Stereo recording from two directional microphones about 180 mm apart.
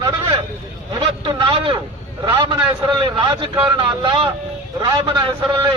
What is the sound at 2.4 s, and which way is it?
A man's voice, 25° right (ahead or behind).